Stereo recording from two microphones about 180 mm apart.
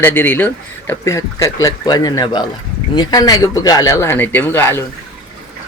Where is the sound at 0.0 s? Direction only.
10° left (ahead or behind).